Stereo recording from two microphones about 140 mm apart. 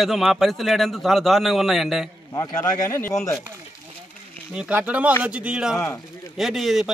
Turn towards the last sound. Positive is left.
turn(degrees=0)  # may be behind; listen again after turning